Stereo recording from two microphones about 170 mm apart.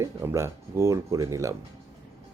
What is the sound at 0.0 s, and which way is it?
A man's voice, 15° right (ahead or behind).